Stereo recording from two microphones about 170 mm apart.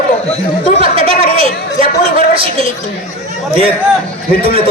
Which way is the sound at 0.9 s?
35° right (ahead or behind).